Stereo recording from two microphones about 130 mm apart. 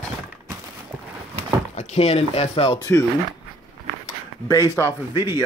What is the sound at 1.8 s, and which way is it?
Speech, 50° left (ahead or behind).